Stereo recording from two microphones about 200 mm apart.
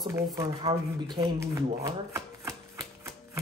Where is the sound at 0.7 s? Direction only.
35° right (ahead or behind).